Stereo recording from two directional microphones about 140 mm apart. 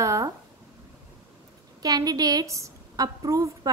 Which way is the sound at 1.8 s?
25° right (ahead or behind).